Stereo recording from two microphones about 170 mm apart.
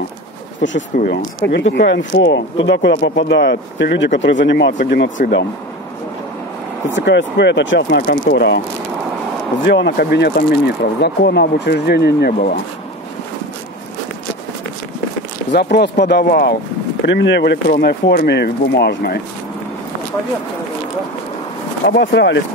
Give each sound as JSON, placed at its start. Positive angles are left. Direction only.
{"t": 0.6, "sound": "speech", "side_deg": 90}
{"t": 0.9, "sound": "speech", "side_deg": 65}
{"t": 5.1, "sound": "speech", "side_deg": 60}
{"t": 7.0, "sound": "speech", "side_deg": 90}
{"t": 9.7, "sound": "speech", "side_deg": 90}
{"t": 15.5, "sound": "speech", "side_deg": 80}
{"t": 17.0, "sound": "speech", "side_deg": 90}
{"t": 21.8, "sound": "speech", "side_deg": 80}